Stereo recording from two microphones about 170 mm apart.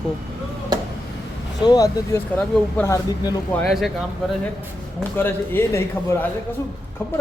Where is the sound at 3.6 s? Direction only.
Centre (ahead or behind).